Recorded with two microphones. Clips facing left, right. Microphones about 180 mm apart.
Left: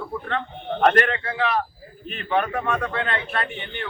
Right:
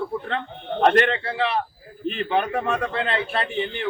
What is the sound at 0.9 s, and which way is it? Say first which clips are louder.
A man's voice: right 2 dB; 30° right (ahead or behind).